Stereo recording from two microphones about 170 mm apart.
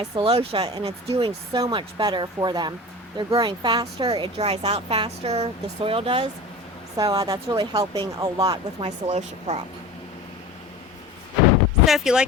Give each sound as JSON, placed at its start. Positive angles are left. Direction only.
{"t": 0.2, "sound": "speech", "side_deg": -30}
{"t": 4.1, "sound": "speech", "side_deg": -35}
{"t": 6.9, "sound": "speech", "side_deg": -20}
{"t": 9.0, "sound": "speech", "side_deg": -40}
{"t": 11.9, "sound": "speech", "side_deg": 0}